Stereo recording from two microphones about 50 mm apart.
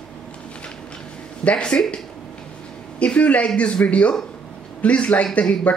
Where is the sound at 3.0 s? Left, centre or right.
Left.